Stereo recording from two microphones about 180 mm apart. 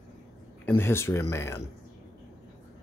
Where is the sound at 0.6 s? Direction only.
10° left (ahead or behind).